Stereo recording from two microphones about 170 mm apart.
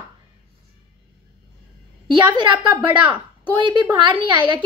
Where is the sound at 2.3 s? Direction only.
25° right (ahead or behind).